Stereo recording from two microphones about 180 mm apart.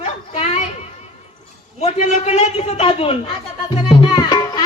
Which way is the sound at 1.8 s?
35° left (ahead or behind).